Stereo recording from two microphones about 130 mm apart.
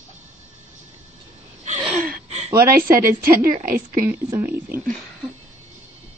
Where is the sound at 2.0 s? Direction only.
65° right (ahead or behind).